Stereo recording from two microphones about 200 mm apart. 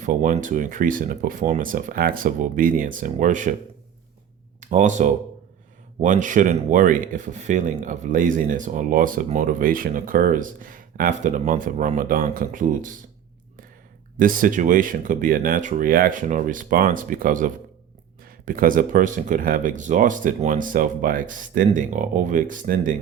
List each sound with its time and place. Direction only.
0.0 s speech: 40° right (ahead or behind)
4.6 s speech: 35° right (ahead or behind)
14.2 s speech: 45° right (ahead or behind)